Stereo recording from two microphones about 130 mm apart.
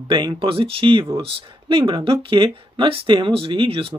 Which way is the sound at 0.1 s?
40° right (ahead or behind).